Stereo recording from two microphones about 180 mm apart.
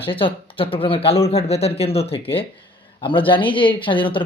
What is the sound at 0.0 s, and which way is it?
Speech, 30° left (ahead or behind).